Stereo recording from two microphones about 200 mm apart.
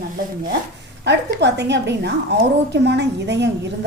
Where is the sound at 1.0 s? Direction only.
60° right (ahead or behind).